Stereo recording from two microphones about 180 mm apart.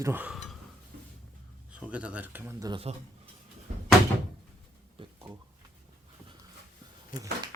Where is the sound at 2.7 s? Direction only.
30° right (ahead or behind).